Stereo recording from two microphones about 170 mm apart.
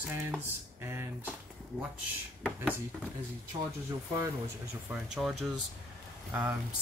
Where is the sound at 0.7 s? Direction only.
15° right (ahead or behind).